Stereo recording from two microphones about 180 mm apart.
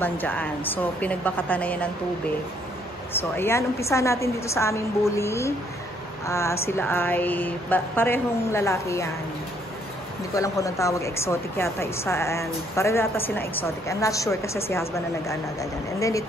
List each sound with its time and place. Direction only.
0.0 s speech: 10° left (ahead or behind)
10.3 s speech: 15° left (ahead or behind)